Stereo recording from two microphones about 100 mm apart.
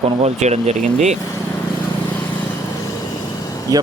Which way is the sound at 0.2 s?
90° right.